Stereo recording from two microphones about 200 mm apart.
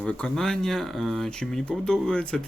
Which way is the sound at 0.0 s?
5° left (ahead or behind).